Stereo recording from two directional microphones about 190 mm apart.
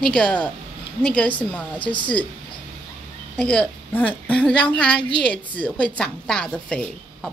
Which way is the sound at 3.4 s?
5° left (ahead or behind).